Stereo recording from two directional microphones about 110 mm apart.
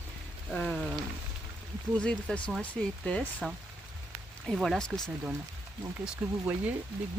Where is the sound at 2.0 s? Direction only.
5° left (ahead or behind).